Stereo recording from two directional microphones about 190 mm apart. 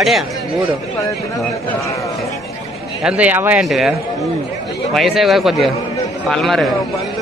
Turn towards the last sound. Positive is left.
turn(degrees=0)  # may be behind; listen again after turning